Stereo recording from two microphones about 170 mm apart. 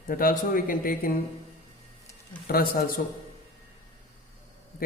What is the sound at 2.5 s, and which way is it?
Speech, 60° left (ahead or behind).